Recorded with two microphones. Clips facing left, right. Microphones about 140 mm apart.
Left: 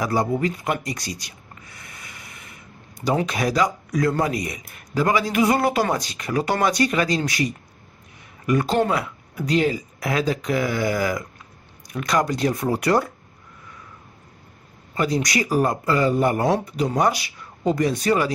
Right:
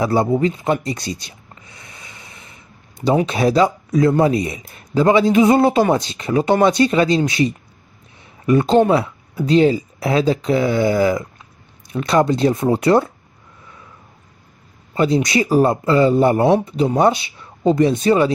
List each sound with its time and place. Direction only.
0.0 s a sound: 25° right (ahead or behind)
3.0 s speech: 25° right (ahead or behind)
15.0 s speech: 25° right (ahead or behind)